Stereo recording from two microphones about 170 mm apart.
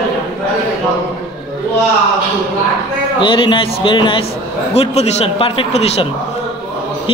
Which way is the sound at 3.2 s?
30° left (ahead or behind).